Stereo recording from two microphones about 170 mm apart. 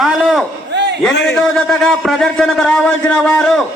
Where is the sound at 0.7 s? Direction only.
90° right.